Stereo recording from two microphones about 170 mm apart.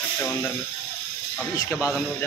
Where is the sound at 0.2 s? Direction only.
10° left (ahead or behind).